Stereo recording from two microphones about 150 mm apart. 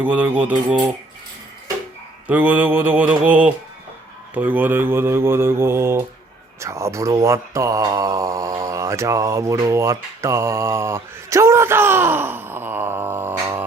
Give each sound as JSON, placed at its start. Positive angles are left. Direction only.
{"t": 0.0, "sound": "mantra", "side_deg": -10}
{"t": 2.2, "sound": "mantra", "side_deg": -10}
{"t": 6.6, "sound": "speech", "side_deg": -20}